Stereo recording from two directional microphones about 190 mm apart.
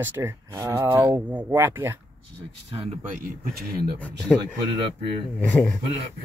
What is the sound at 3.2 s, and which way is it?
Speech, 50° right (ahead or behind).